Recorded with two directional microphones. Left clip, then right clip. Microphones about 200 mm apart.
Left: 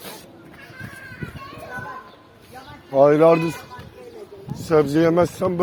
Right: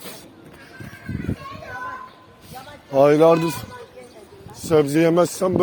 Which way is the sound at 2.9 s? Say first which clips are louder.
Even; 50° right (ahead or behind).